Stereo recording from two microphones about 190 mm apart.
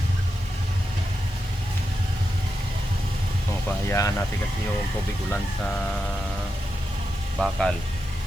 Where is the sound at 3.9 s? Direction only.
15° left (ahead or behind).